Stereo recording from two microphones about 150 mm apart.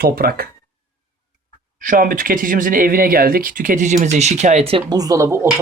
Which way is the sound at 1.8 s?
65° right (ahead or behind).